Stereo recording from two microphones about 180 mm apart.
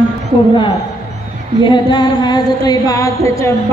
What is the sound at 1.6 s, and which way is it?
Music, 25° left (ahead or behind).